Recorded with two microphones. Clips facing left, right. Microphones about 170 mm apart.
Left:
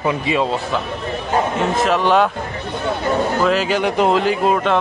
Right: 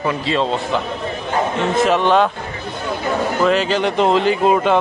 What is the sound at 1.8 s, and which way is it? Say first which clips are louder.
Speech: right 2 dB; centre (ahead or behind).